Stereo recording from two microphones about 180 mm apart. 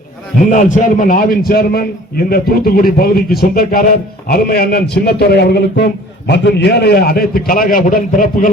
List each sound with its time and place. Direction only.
0.3 s a man's voice: 45° left (ahead or behind)